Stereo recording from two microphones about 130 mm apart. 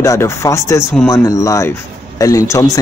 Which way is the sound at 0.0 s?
25° left (ahead or behind).